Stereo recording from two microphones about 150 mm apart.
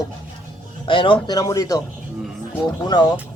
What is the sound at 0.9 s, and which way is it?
Speech, 35° left (ahead or behind).